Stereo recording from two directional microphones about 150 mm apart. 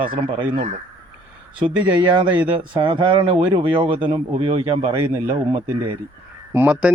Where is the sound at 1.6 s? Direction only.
30° right (ahead or behind).